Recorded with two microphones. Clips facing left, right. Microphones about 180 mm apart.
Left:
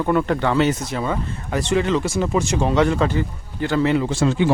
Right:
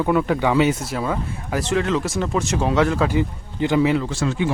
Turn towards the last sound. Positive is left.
turn(degrees=25)  # may be behind; listen again after turning